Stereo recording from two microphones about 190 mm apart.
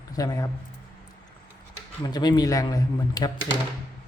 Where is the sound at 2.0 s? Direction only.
20° left (ahead or behind).